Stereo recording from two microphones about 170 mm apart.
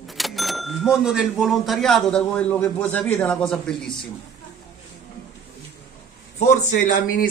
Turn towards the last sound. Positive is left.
turn(degrees=55)  # may be behind; listen again after turning